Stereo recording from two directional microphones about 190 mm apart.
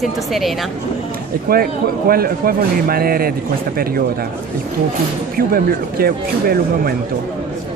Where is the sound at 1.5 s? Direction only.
50° right (ahead or behind).